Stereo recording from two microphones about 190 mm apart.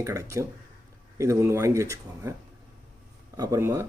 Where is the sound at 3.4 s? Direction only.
15° right (ahead or behind).